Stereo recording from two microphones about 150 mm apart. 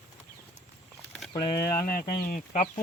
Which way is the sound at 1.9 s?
70° left (ahead or behind).